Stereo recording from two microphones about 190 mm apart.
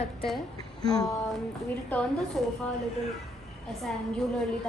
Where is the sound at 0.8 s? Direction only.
20° left (ahead or behind).